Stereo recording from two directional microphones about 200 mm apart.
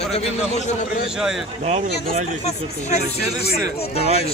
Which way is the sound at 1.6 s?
35° right (ahead or behind).